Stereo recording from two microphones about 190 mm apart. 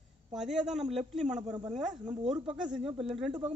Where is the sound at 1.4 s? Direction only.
20° right (ahead or behind).